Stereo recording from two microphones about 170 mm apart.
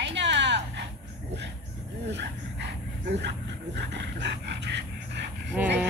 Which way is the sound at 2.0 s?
90° right.